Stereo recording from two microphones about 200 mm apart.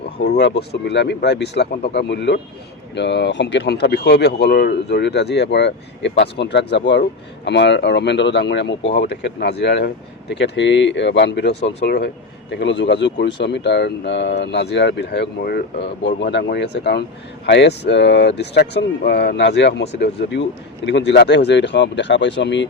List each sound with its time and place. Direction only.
0.0 s speech: 55° left (ahead or behind)